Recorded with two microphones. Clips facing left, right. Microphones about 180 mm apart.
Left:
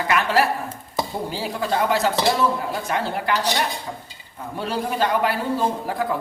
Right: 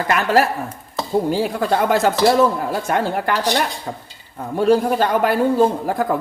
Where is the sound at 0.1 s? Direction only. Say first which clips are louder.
Right 3 dB; 45° right (ahead or behind).